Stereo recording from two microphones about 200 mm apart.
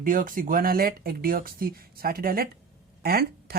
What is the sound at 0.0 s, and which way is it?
Speech, 45° right (ahead or behind).